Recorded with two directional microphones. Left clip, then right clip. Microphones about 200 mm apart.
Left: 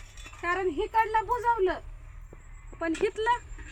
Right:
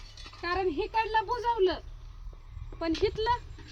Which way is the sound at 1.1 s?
5° right (ahead or behind).